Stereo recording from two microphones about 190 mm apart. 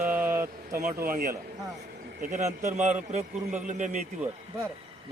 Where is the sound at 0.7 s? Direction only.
50° right (ahead or behind).